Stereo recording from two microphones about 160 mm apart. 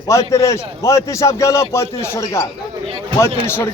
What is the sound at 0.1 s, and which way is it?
A man's voice, 20° left (ahead or behind).